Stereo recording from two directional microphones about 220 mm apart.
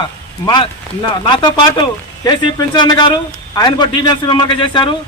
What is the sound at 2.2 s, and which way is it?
A man's voice, 20° left (ahead or behind).